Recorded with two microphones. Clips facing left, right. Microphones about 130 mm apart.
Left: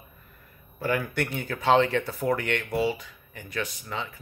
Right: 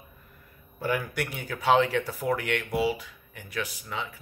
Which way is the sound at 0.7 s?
15° right (ahead or behind).